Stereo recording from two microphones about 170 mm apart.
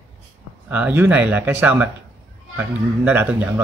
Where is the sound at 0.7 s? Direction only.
10° right (ahead or behind).